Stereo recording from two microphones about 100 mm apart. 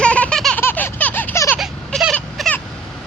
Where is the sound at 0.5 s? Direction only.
20° left (ahead or behind).